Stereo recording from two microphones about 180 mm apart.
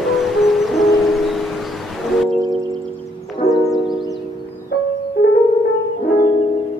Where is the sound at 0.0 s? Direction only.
Centre (ahead or behind).